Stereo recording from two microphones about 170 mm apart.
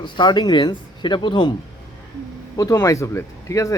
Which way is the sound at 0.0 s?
25° left (ahead or behind).